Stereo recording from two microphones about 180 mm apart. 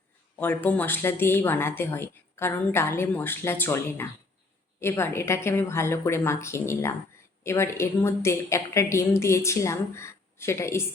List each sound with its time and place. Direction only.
0.3 s a woman's voice: 10° left (ahead or behind)